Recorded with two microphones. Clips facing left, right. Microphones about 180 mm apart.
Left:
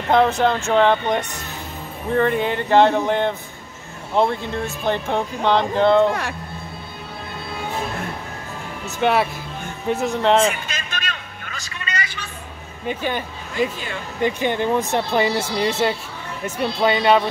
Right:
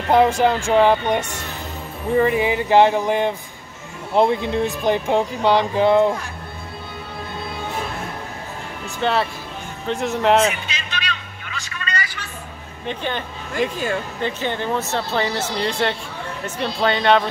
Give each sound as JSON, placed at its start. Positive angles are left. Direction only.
{"t": 0.1, "sound": "speech", "side_deg": -10}
{"t": 9.0, "sound": "speech", "side_deg": 10}
{"t": 9.8, "sound": "speech", "side_deg": 0}
{"t": 10.7, "sound": "a sound", "side_deg": 50}
{"t": 12.8, "sound": "speech", "side_deg": 10}